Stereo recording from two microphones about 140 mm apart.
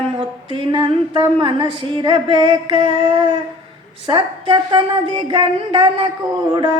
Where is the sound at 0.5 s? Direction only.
35° right (ahead or behind).